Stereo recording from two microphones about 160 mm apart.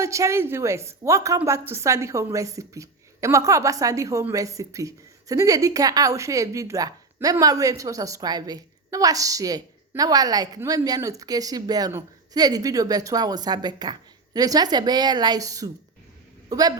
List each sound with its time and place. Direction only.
0.0 s a man's voice: 20° right (ahead or behind)